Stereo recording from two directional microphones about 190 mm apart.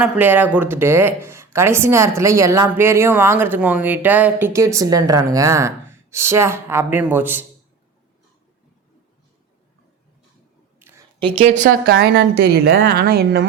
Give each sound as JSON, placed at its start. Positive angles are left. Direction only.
{"t": 0.0, "sound": "a woman's voice", "side_deg": -10}
{"t": 10.8, "sound": "a sound", "side_deg": -15}
{"t": 11.2, "sound": "speech", "side_deg": -30}